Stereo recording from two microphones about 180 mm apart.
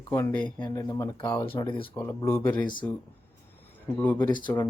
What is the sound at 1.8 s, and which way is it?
Speech, 10° left (ahead or behind).